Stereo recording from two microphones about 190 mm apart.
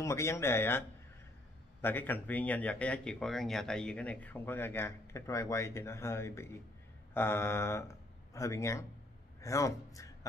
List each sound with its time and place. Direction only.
0.0 s a man's voice: 15° left (ahead or behind)